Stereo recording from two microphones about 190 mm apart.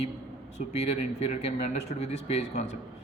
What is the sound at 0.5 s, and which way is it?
A man's voice, 35° left (ahead or behind).